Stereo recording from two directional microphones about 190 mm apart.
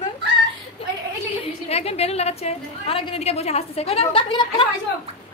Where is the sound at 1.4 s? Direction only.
30° left (ahead or behind).